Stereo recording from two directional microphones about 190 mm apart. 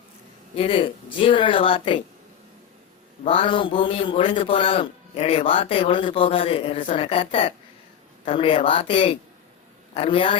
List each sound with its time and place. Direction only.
0.5 s a man's voice: 30° left (ahead or behind)
3.2 s a man's voice: 30° left (ahead or behind)